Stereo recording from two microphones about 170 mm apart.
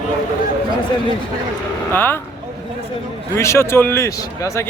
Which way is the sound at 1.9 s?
15° left (ahead or behind).